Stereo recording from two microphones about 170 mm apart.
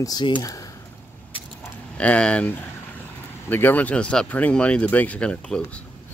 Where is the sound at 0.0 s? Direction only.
25° left (ahead or behind).